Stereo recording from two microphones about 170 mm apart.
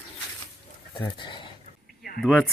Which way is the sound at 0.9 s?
25° left (ahead or behind).